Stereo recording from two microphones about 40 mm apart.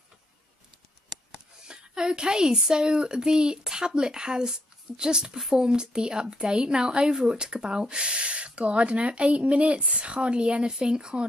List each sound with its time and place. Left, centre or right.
1.7 s a woman's voice: centre